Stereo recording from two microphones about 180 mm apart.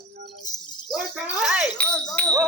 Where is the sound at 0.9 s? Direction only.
5° right (ahead or behind).